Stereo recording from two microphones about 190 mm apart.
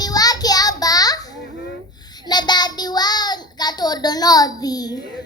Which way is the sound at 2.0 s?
20° left (ahead or behind).